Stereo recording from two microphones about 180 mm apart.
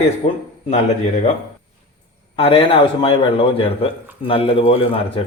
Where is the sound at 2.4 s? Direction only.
30° left (ahead or behind).